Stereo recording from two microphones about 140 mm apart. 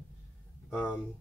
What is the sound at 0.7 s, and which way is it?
Speech, centre (ahead or behind).